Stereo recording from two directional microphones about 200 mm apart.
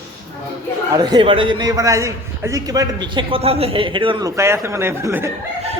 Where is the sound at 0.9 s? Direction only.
20° right (ahead or behind).